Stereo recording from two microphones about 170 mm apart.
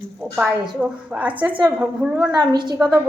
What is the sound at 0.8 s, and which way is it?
A woman's voice, 5° right (ahead or behind).